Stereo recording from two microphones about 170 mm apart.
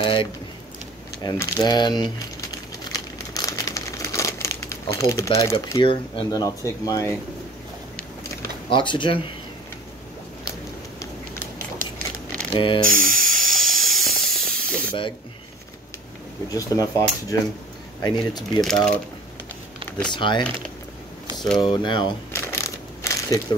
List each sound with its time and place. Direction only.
0.0 s speech: 30° left (ahead or behind)
2.8 s crumpling: 20° left (ahead or behind)
5.8 s speech: 30° left (ahead or behind)
8.6 s speech: 30° left (ahead or behind)
12.5 s speech: 30° left (ahead or behind)
12.8 s spray: 55° right (ahead or behind)
13.6 s hiss: centre (ahead or behind)
16.4 s speech: 20° left (ahead or behind)
20.1 s speech: 25° left (ahead or behind)
21.5 s speech: 25° left (ahead or behind)
22.3 s crushing: 15° left (ahead or behind)